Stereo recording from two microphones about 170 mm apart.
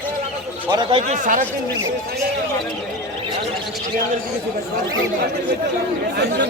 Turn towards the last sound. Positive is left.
turn(degrees=-75)  # may be behind; listen again after turning